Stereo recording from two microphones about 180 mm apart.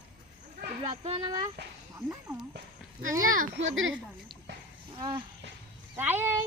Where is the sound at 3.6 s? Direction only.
90° right.